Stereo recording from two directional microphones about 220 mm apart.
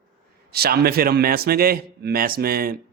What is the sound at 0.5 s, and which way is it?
A man's voice, 45° right (ahead or behind).